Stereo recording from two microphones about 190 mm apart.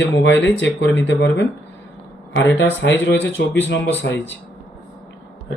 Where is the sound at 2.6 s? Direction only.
70° left (ahead or behind).